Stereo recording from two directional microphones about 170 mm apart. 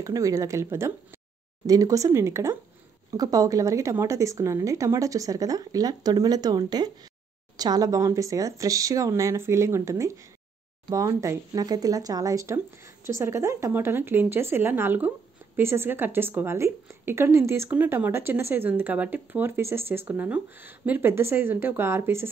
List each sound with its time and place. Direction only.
0.0 s speech: 20° right (ahead or behind)